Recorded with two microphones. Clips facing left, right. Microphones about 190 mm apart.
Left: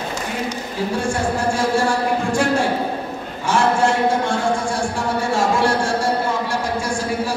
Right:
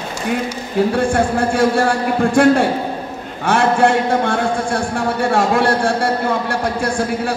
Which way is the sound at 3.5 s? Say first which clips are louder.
Right 3 dB; 60° right (ahead or behind).